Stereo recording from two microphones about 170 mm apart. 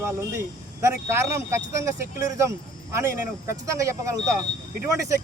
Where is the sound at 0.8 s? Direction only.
15° right (ahead or behind).